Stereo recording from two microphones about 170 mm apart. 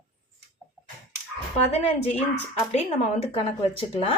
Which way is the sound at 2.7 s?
40° left (ahead or behind).